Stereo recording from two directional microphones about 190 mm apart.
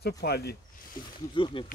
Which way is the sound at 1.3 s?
25° left (ahead or behind).